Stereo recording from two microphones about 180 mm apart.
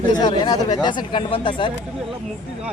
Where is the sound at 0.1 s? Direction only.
25° left (ahead or behind).